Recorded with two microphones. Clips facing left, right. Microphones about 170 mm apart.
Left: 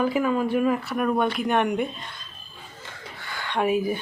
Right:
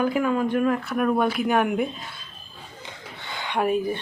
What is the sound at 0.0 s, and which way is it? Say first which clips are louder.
Speech: even; centre (ahead or behind).